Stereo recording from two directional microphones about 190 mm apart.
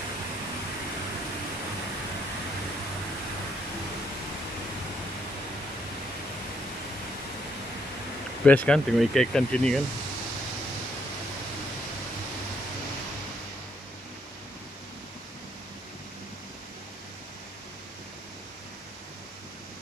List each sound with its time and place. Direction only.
8.5 s speech: 5° left (ahead or behind)